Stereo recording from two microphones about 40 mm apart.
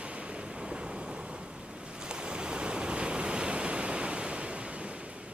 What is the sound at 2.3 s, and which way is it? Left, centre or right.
Waves, right.